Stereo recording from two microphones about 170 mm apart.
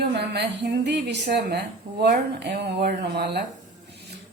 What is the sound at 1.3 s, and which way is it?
Speech, 75° right (ahead or behind).